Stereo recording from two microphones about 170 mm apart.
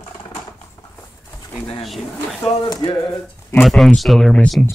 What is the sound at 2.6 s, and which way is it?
Speech, 25° left (ahead or behind).